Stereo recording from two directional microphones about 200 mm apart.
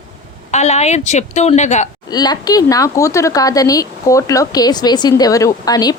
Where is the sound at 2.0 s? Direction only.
20° left (ahead or behind).